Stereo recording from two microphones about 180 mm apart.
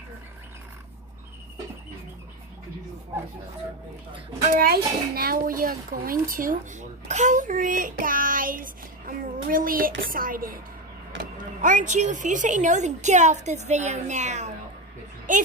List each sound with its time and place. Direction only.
4.4 s a child's voice: 55° right (ahead or behind)